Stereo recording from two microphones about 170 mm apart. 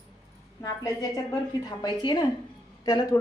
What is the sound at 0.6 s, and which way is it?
A woman's voice, 20° left (ahead or behind).